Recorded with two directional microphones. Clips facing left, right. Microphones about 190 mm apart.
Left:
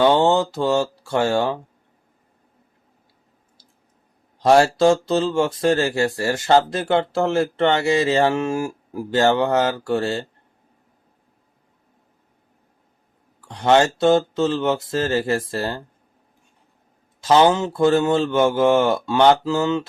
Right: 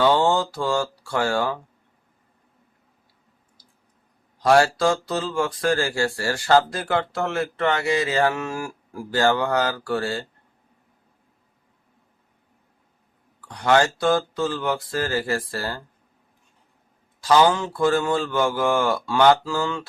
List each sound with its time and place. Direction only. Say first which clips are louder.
0.0 s speech: left 3 dB; 20° left (ahead or behind)
4.4 s speech: left 3 dB; 25° left (ahead or behind)
13.5 s speech: left 3 dB; 25° left (ahead or behind)
17.2 s speech: left 2 dB; 25° left (ahead or behind)